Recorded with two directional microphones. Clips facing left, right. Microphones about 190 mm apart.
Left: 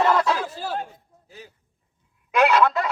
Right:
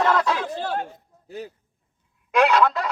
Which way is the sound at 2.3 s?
Centre (ahead or behind).